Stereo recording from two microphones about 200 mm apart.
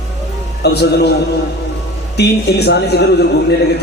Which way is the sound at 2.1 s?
55° left (ahead or behind).